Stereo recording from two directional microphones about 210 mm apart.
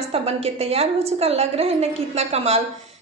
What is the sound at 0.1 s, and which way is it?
A woman's voice, 30° right (ahead or behind).